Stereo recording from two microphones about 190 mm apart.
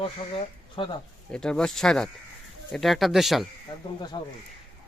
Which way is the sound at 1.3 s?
5° left (ahead or behind).